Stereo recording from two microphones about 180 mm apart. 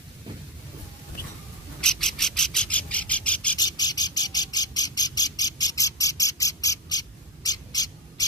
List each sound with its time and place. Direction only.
1.8 s bird: 5° left (ahead or behind)
3.5 s bird: 20° left (ahead or behind)